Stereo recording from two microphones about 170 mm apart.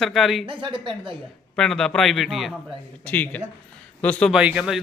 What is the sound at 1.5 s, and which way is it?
Speech, 5° left (ahead or behind).